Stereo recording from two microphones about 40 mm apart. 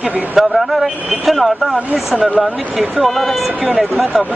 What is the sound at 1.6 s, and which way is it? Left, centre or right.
Speech, centre.